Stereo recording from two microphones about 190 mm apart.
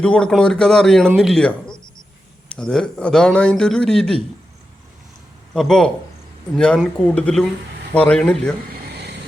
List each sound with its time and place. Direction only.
0.0 s speech: 5° left (ahead or behind)
5.5 s speech: centre (ahead or behind)
8.7 s a sound: 60° right (ahead or behind)